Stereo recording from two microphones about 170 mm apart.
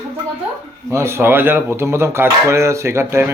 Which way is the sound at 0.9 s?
15° right (ahead or behind).